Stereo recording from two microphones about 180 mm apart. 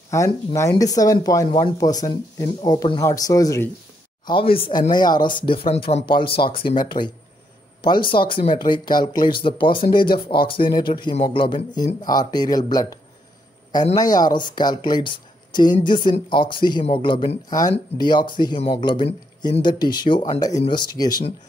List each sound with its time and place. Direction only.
0.1 s speech: 15° left (ahead or behind)
4.3 s speech: 30° left (ahead or behind)